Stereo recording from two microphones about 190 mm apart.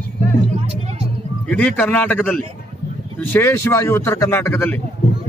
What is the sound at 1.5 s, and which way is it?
A man's voice, 5° left (ahead or behind).